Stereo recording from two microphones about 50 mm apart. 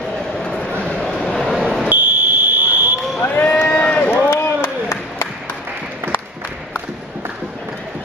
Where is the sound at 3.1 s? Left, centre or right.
Left.